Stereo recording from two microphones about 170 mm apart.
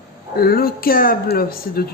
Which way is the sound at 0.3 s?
65° left (ahead or behind).